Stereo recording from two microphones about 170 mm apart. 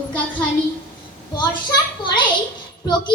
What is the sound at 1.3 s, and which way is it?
Speech, 25° left (ahead or behind).